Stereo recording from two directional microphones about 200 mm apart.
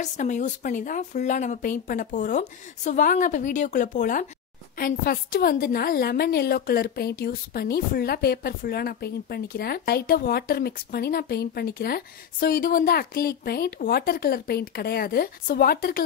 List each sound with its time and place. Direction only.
0.0 s a woman's voice: 35° left (ahead or behind)